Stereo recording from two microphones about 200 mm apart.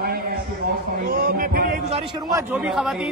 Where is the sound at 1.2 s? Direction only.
45° right (ahead or behind).